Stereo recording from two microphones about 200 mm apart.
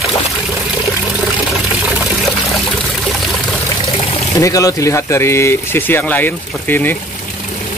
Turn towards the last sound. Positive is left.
turn(degrees=10)  # may be behind; listen again after turning